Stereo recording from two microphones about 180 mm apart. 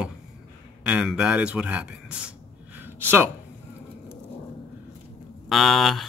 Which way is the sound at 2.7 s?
10° right (ahead or behind).